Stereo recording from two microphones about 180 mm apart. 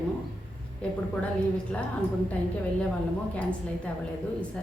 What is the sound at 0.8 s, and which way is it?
Speech, 5° left (ahead or behind).